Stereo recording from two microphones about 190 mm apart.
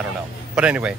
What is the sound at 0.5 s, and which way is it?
Speech, 5° right (ahead or behind).